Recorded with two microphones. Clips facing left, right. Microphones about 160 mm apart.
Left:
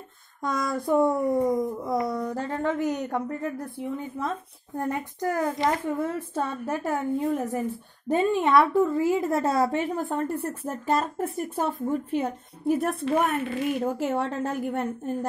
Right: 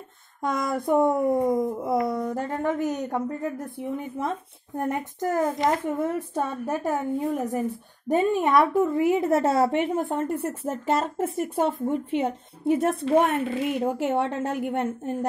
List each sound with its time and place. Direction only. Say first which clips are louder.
0.4 s a woman's voice: right 1 dB; 25° right (ahead or behind)